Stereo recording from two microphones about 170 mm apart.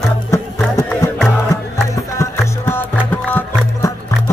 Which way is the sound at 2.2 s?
15° left (ahead or behind).